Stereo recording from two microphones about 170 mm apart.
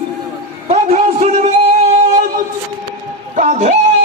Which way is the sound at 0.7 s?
40° right (ahead or behind).